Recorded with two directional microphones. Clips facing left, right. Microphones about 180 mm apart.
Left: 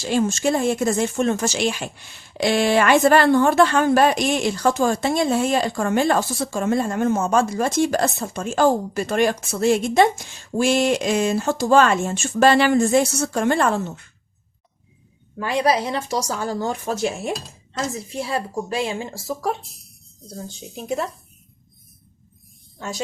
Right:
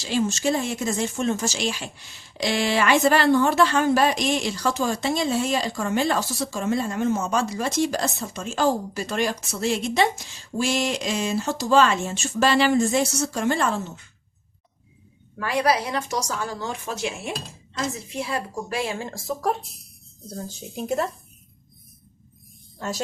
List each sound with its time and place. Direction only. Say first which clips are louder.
0.0 s speech: left 3 dB; 50° left (ahead or behind)
15.4 s speech: left 2 dB; 25° left (ahead or behind)
19.1 s speech: even; centre (ahead or behind)